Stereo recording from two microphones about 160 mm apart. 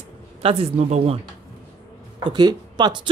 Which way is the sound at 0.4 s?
35° right (ahead or behind).